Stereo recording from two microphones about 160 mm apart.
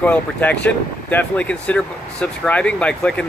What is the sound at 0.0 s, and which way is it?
Speech, 10° left (ahead or behind).